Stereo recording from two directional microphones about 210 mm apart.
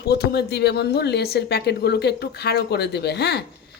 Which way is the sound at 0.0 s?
50° left (ahead or behind).